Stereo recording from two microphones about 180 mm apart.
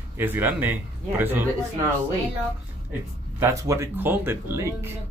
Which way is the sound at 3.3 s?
15° right (ahead or behind).